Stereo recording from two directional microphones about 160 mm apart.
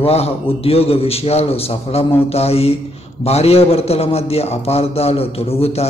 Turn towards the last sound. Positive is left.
turn(degrees=40)  # may be behind; listen again after turning